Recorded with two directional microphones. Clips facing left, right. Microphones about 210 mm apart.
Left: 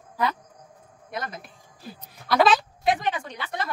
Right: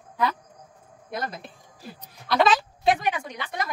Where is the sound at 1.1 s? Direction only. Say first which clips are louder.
Right 2 dB; 35° right (ahead or behind).